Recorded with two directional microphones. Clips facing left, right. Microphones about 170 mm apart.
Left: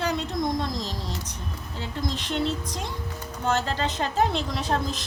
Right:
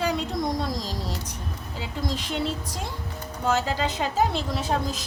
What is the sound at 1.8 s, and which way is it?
A woman's voice, 10° right (ahead or behind).